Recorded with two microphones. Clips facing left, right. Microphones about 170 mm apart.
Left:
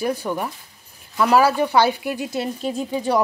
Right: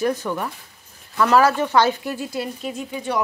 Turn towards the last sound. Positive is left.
turn(degrees=35)  # may be behind; listen again after turning